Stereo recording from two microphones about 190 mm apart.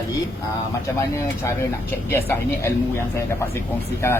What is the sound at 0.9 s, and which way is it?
Speech, 15° left (ahead or behind).